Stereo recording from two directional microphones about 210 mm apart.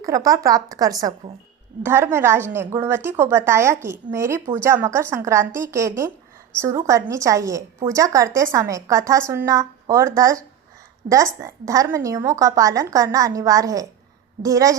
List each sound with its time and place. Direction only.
0.0 s a woman's voice: 15° right (ahead or behind)